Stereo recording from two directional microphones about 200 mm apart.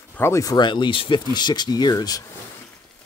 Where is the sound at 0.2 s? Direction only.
15° left (ahead or behind).